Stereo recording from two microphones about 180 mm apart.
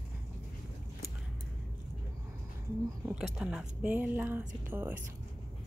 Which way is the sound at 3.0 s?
5° right (ahead or behind).